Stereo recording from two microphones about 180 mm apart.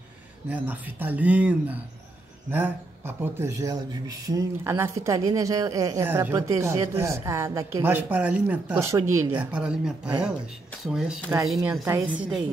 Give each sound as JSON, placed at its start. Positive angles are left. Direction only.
{"t": 0.5, "sound": "speech", "side_deg": -10}